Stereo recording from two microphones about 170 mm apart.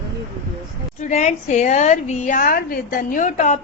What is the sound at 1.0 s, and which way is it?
A woman's voice, 45° left (ahead or behind).